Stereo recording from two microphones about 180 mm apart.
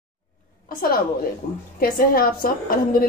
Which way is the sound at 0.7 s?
55° left (ahead or behind).